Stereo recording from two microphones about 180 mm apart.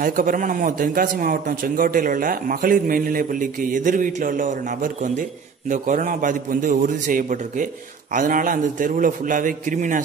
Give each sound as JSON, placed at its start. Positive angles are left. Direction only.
{"t": 0.0, "sound": "a man's voice", "side_deg": -50}